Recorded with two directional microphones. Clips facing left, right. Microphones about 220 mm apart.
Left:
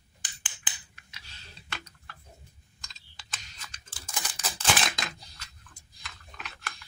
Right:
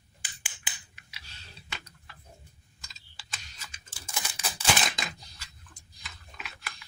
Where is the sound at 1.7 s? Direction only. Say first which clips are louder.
Left 2 dB; centre (ahead or behind).